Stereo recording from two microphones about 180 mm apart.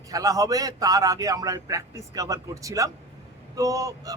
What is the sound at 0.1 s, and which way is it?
Speech, 20° right (ahead or behind).